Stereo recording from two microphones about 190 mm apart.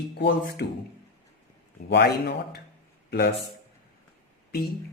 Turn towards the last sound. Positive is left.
turn(degrees=55)  # may be behind; listen again after turning